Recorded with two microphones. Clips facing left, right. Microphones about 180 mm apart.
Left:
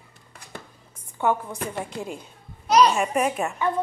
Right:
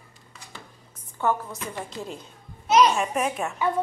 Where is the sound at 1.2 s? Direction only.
20° left (ahead or behind).